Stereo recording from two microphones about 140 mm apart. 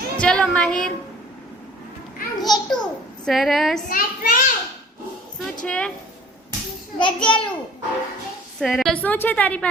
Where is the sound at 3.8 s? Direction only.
85° left.